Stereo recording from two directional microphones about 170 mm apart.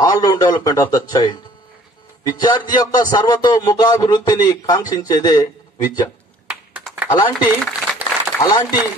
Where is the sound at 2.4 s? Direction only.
25° left (ahead or behind).